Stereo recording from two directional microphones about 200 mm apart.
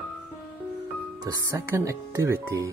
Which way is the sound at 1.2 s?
15° right (ahead or behind).